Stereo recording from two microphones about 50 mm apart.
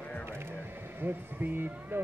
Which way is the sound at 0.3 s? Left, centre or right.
Right.